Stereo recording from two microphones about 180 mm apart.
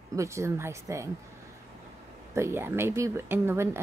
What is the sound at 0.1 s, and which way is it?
A woman's voice, 15° right (ahead or behind).